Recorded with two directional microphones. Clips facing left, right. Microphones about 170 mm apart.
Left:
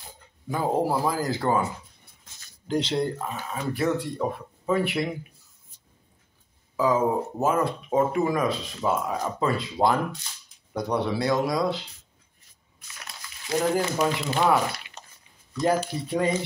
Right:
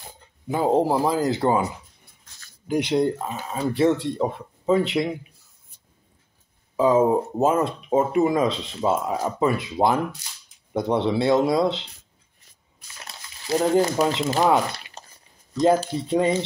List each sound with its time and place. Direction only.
0.5 s speech: 20° right (ahead or behind)
2.7 s speech: 15° right (ahead or behind)
6.8 s speech: 25° right (ahead or behind)
12.8 s a sound: 30° right (ahead or behind)
14.2 s speech: 40° right (ahead or behind)
15.0 s a sound: 35° right (ahead or behind)
15.6 s speech: 20° right (ahead or behind)